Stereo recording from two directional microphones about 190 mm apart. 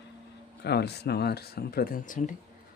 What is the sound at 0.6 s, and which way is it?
Speech, 60° left (ahead or behind).